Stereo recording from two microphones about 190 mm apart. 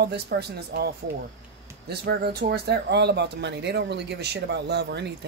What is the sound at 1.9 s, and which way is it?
Speech, 55° right (ahead or behind).